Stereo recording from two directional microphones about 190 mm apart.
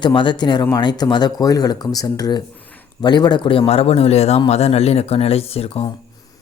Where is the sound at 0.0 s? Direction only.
25° left (ahead or behind).